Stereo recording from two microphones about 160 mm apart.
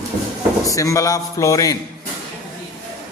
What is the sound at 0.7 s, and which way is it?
A man's voice, 20° left (ahead or behind).